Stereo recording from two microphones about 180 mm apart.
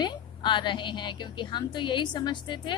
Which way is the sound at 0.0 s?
25° left (ahead or behind).